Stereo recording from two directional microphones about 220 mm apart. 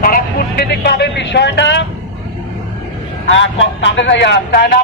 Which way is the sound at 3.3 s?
60° left (ahead or behind).